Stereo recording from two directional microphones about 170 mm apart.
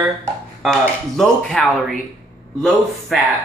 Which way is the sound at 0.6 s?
5° left (ahead or behind).